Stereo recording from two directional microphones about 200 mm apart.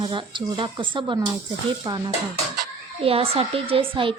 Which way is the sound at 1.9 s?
15° right (ahead or behind).